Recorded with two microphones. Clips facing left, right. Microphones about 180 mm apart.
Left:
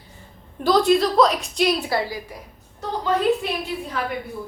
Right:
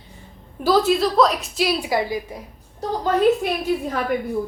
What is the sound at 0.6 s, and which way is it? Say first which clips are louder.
A woman's voice: even; 5° right (ahead or behind).